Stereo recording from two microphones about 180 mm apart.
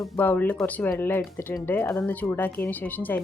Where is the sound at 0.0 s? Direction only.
10° left (ahead or behind).